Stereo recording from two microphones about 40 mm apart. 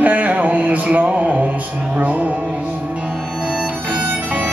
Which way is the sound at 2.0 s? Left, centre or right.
Right.